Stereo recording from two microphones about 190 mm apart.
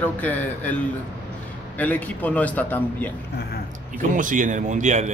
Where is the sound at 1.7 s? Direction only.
10° left (ahead or behind).